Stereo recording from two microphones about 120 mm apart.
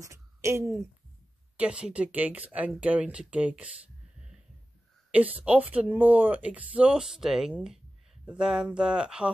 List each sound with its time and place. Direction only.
0.0 s speech: 25° right (ahead or behind)
1.6 s speech: 10° right (ahead or behind)
5.1 s speech: 10° right (ahead or behind)